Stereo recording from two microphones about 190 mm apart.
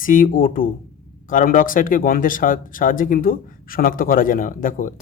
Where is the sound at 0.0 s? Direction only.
45° left (ahead or behind).